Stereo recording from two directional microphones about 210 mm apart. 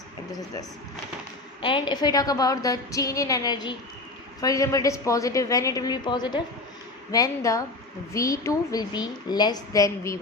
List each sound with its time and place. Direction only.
1.6 s a woman's voice: 20° left (ahead or behind)